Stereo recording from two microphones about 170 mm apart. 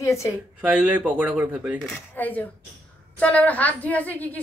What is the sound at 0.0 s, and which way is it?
Speech, 15° left (ahead or behind).